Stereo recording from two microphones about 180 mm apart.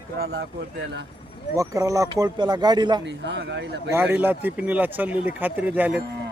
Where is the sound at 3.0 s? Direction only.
75° right (ahead or behind).